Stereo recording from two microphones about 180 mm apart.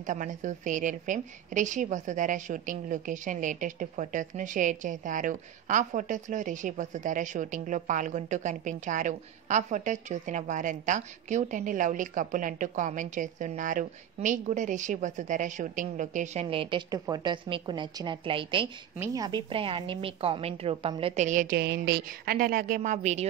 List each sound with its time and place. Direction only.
0.0 s a woman's voice: 45° right (ahead or behind)
16.4 s a woman's voice: 30° right (ahead or behind)
21.2 s a woman's voice: 45° right (ahead or behind)